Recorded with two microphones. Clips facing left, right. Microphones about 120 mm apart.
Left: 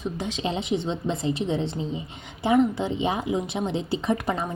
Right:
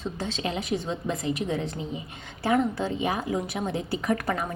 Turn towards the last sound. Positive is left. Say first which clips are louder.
# left 1 dB
turn(degrees=20)  # may be behind; listen again after turning